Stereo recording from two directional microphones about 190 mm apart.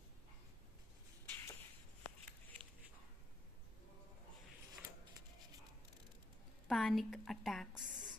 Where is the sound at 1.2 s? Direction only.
15° left (ahead or behind).